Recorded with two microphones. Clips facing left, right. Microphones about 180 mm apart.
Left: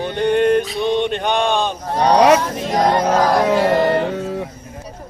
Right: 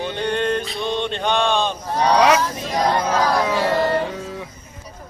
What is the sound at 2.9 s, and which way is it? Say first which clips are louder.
Music: left 4 dB; 40° left (ahead or behind).